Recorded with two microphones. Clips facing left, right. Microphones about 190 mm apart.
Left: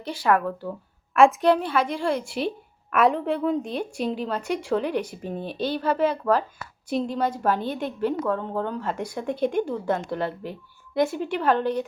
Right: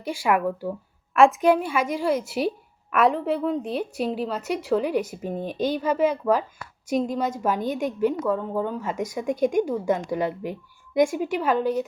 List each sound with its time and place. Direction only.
0.0 s a woman's voice: 10° right (ahead or behind)
1.1 s a woman's voice: centre (ahead or behind)